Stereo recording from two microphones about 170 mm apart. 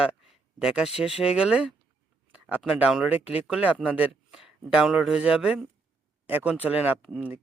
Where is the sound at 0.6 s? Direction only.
5° right (ahead or behind).